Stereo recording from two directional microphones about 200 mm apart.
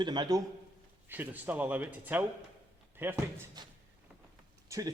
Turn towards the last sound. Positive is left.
turn(degrees=-15)  # may be behind; listen again after turning